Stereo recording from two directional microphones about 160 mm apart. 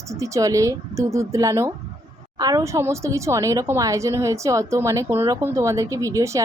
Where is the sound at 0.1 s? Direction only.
20° right (ahead or behind).